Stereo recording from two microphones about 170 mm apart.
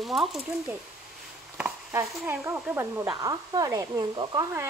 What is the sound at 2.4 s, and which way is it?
Speech, 15° right (ahead or behind).